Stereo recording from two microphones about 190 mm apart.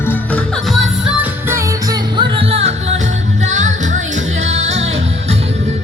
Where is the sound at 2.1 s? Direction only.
30° right (ahead or behind).